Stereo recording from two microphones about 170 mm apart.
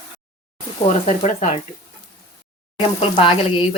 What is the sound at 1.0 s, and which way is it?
Speech, 45° left (ahead or behind).